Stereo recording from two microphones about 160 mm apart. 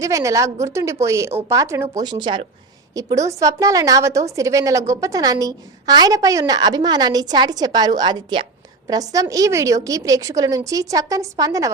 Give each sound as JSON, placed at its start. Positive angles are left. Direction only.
{"t": 0.0, "sound": "a woman's voice", "side_deg": -20}